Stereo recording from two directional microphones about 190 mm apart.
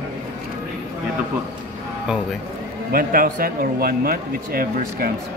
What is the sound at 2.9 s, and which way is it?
Speech, 50° right (ahead or behind).